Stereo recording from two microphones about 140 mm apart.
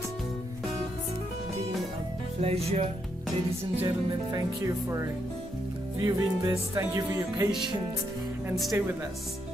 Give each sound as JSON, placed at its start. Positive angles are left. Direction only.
{"t": 2.4, "sound": "speech", "side_deg": -45}
{"t": 3.8, "sound": "music", "side_deg": -25}